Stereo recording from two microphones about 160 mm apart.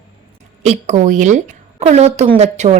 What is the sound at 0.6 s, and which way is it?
A woman's voice, 45° right (ahead or behind).